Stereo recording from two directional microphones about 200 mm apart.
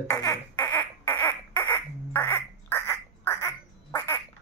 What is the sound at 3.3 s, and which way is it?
Quack, 10° left (ahead or behind).